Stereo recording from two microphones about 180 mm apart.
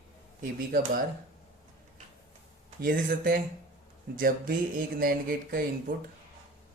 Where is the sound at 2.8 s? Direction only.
50° right (ahead or behind).